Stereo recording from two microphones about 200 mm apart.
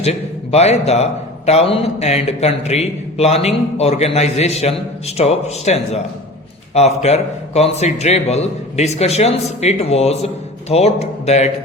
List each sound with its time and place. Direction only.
0.0 s a man's voice: 30° left (ahead or behind)